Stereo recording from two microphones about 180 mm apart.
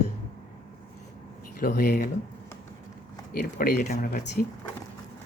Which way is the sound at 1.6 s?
60° left (ahead or behind).